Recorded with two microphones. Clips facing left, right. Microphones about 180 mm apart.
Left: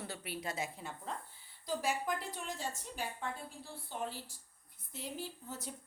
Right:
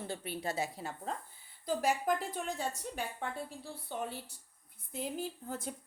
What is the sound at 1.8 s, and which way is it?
A woman's voice, 50° right (ahead or behind).